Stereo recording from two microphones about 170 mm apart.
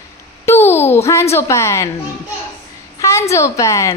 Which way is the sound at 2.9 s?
15° left (ahead or behind).